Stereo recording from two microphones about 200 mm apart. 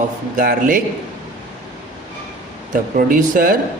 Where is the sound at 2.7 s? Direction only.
45° right (ahead or behind).